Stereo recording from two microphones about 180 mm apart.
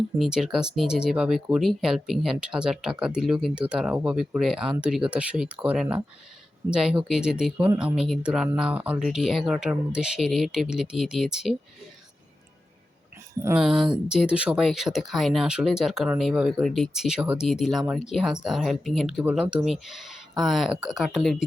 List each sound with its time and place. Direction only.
0.2 s speech: 5° right (ahead or behind)
13.4 s speech: 5° right (ahead or behind)